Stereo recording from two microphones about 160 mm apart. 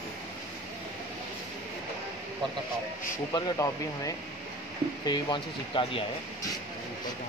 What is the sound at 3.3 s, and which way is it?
Speech, 20° left (ahead or behind).